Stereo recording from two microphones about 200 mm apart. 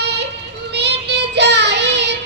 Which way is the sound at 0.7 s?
60° right (ahead or behind).